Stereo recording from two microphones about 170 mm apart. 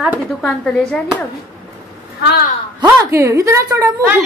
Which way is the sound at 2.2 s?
75° left (ahead or behind).